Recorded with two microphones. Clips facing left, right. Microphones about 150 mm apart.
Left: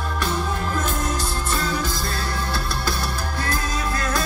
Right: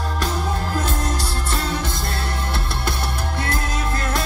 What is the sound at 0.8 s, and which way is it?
Music, 30° right (ahead or behind).